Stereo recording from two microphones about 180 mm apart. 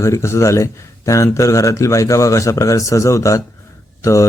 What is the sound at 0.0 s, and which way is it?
Speech, 15° left (ahead or behind).